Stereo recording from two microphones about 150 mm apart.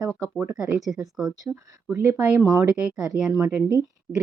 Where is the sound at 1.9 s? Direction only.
15° right (ahead or behind).